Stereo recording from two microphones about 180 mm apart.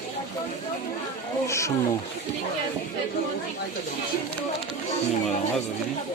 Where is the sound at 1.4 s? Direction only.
15° left (ahead or behind).